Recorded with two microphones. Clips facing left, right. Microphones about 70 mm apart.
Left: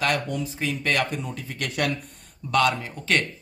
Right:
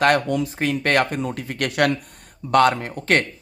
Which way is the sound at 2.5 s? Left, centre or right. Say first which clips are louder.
Right 6 dB; right.